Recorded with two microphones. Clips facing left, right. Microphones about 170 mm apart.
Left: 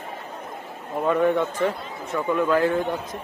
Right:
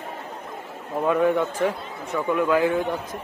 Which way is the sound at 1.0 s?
5° right (ahead or behind).